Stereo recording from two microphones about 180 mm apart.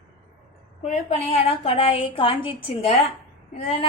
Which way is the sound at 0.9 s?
35° left (ahead or behind).